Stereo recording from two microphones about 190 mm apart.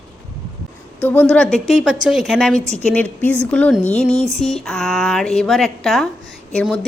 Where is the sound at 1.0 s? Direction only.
10° left (ahead or behind).